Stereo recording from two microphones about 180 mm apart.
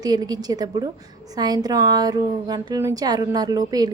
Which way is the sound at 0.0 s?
20° right (ahead or behind).